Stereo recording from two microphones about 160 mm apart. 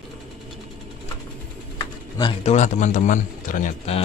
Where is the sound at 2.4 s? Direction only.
50° left (ahead or behind).